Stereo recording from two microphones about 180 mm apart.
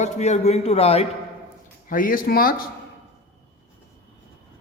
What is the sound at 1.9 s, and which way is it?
Speech, 50° left (ahead or behind).